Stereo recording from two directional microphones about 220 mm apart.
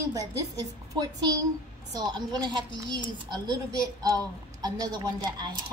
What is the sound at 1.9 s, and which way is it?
A woman's voice, 20° right (ahead or behind).